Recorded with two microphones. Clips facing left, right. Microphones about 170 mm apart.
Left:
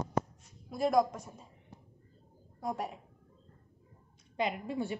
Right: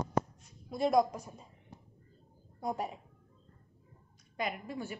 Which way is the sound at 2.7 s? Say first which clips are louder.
Right 1 dB; centre (ahead or behind).